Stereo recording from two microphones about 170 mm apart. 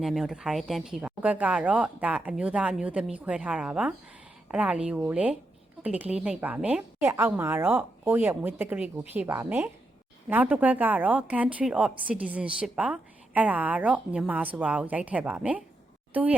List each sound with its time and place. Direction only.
0.0 s a woman's voice: centre (ahead or behind)